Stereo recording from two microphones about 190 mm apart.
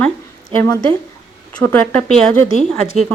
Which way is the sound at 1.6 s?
5° left (ahead or behind).